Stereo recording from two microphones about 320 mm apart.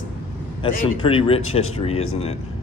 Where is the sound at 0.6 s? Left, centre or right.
Centre.